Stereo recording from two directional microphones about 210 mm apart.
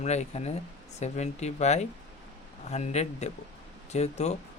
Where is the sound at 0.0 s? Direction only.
30° left (ahead or behind).